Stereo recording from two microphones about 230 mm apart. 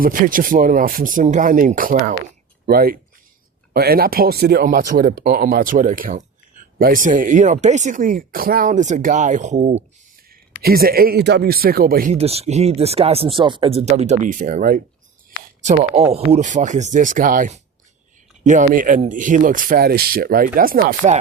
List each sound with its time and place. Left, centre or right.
0.0 s speech: right
12.2 s speech: right